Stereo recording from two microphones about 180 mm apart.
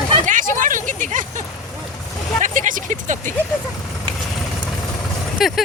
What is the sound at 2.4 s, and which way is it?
Speech, 45° right (ahead or behind).